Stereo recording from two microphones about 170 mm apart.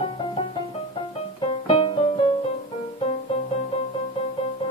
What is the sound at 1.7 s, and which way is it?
Music, 30° left (ahead or behind).